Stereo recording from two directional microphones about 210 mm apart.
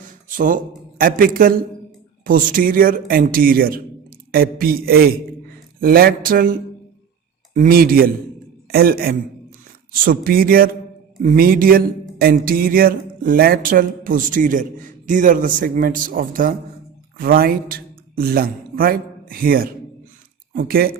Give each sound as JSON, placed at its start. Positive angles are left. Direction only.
{"t": 0.3, "sound": "speech", "side_deg": -40}